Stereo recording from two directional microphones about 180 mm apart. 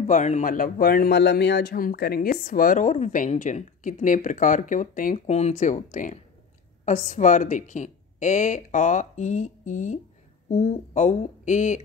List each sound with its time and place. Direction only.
0.0 s a man's voice: 40° left (ahead or behind)